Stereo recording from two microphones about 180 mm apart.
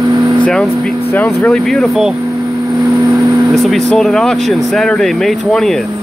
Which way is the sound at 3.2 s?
Centre (ahead or behind).